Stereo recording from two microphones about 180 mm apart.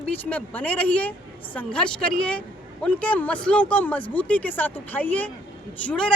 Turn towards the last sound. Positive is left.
turn(degrees=5)  # may be behind; listen again after turning